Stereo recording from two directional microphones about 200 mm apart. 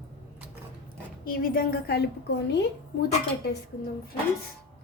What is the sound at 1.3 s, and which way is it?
Speech, 45° left (ahead or behind).